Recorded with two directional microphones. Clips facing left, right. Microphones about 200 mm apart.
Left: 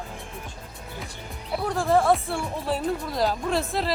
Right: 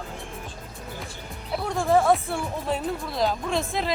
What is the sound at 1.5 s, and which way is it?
Speech, centre (ahead or behind).